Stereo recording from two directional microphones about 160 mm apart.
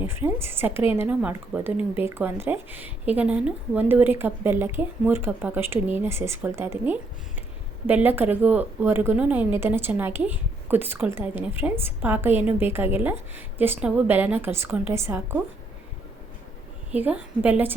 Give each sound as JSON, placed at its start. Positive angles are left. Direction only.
{"t": 0.1, "sound": "speech", "side_deg": -15}
{"t": 16.9, "sound": "speech", "side_deg": -10}